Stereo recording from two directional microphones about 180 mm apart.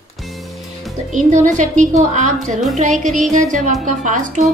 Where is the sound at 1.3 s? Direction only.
45° right (ahead or behind).